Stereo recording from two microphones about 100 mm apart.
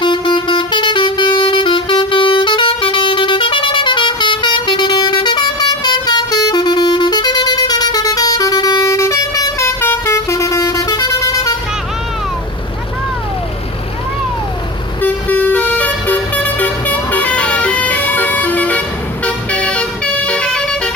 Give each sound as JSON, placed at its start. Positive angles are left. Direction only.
{"t": 0.0, "sound": "vehicle", "side_deg": 50}
{"t": 15.0, "sound": "vehicle", "side_deg": 15}